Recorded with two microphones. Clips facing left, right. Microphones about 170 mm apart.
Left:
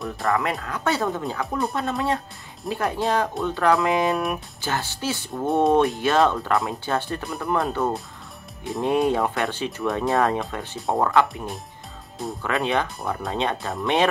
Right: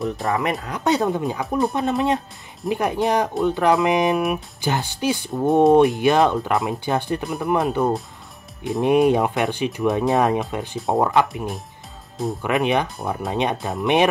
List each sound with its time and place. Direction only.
0.0 s speech: 20° right (ahead or behind)